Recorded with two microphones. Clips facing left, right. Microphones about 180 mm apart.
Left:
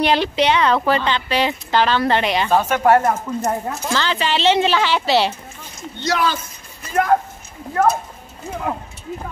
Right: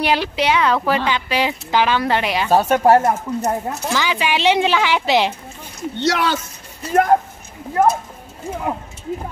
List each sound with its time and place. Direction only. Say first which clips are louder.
0.0 s speech: left 2 dB; 5° right (ahead or behind)
2.5 s speech: right 2 dB; 35° right (ahead or behind)
3.0 s speech: right 1 dB; 15° right (ahead or behind)
5.8 s speech: right 2 dB; 75° right (ahead or behind)
6.8 s speech: right 2 dB; 35° right (ahead or behind)
7.8 s speech: right 1 dB; 15° right (ahead or behind)